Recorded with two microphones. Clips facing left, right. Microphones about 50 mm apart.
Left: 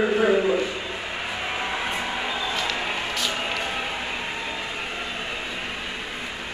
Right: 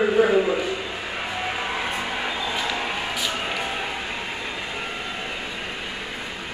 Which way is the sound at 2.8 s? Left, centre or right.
Centre.